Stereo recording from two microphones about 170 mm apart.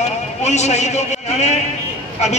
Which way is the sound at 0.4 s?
40° left (ahead or behind).